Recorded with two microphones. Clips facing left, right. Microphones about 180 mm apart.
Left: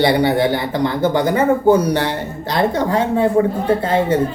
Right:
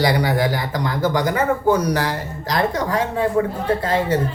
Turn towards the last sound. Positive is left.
turn(degrees=25)  # may be behind; listen again after turning